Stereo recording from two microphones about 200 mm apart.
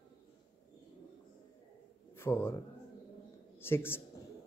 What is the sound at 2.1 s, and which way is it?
Speech, 10° left (ahead or behind).